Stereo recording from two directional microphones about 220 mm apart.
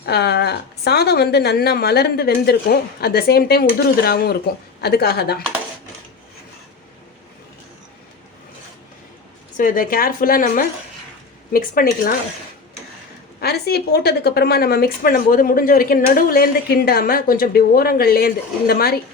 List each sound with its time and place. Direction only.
0.0 s a woman's voice: 50° left (ahead or behind)
9.6 s a woman's voice: 40° left (ahead or behind)
13.4 s a woman's voice: 45° left (ahead or behind)